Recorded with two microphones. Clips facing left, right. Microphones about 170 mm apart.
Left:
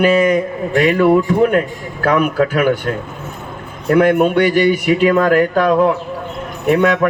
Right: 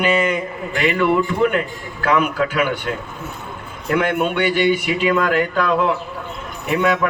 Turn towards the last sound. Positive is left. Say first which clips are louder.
# left 5 dB
turn(degrees=45)  # may be behind; listen again after turning